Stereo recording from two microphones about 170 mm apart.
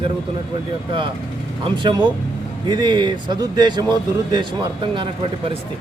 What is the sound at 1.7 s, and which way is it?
A man's voice, 25° right (ahead or behind).